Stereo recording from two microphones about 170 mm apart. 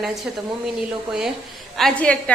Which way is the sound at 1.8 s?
5° left (ahead or behind).